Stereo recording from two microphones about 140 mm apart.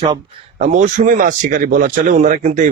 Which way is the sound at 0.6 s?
60° right (ahead or behind).